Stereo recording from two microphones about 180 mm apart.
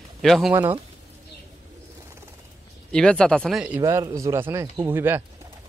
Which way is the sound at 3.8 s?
20° right (ahead or behind).